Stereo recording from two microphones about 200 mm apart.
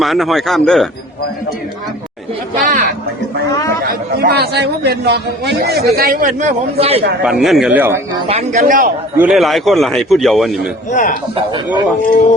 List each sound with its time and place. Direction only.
0.0 s a man's voice: centre (ahead or behind)
2.6 s a man's voice: 40° right (ahead or behind)
7.3 s a man's voice: centre (ahead or behind)
8.3 s speech: 35° right (ahead or behind)
9.1 s a man's voice: 5° right (ahead or behind)
10.9 s a man's voice: 40° left (ahead or behind)